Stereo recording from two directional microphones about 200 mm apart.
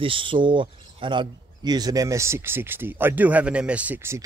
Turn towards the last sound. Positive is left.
turn(degrees=-10)  # may be behind; listen again after turning